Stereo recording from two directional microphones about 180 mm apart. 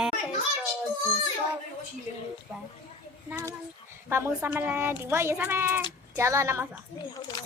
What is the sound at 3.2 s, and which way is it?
A woman's voice, 15° right (ahead or behind).